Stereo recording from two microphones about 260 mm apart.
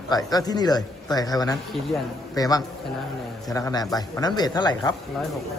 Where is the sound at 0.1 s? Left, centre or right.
Centre.